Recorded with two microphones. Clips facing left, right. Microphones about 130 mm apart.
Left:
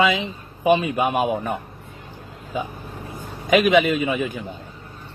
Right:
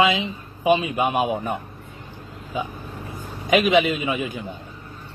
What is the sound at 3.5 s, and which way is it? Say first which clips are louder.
Speech: left 2 dB; 50° left (ahead or behind).